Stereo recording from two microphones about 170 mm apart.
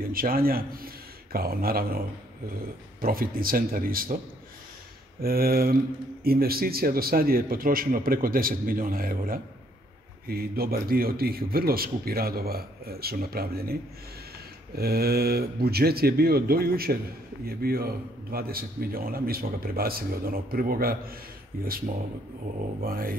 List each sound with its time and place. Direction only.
0.0 s a man's voice: 60° right (ahead or behind)
5.2 s a man's voice: 60° right (ahead or behind)
14.8 s a man's voice: 65° right (ahead or behind)
22.8 s a man's voice: 60° right (ahead or behind)